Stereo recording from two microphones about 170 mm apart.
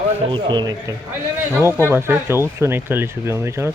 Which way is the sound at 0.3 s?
30° right (ahead or behind).